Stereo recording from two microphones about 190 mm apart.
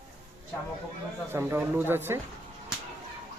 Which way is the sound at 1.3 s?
10° right (ahead or behind).